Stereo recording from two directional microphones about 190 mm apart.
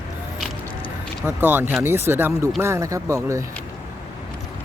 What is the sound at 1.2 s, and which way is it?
Speech, 10° right (ahead or behind).